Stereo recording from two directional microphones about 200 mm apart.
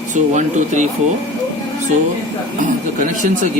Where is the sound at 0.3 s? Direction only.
35° right (ahead or behind).